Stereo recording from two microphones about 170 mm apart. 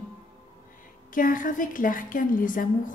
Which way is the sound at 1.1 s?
50° left (ahead or behind).